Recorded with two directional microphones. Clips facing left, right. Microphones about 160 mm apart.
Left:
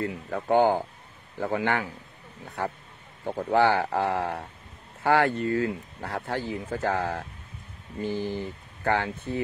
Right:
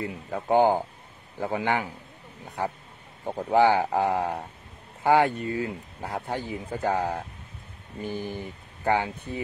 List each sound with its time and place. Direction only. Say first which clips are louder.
0.0 s speech: left 2 dB; 15° right (ahead or behind)